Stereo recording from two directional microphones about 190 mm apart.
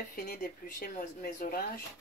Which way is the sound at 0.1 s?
55° left (ahead or behind).